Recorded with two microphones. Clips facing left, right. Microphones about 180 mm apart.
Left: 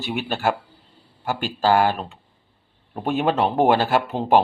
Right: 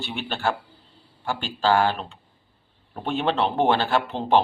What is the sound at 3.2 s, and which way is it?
Speech, 15° left (ahead or behind).